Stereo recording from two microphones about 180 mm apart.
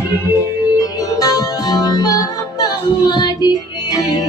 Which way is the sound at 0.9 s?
20° left (ahead or behind).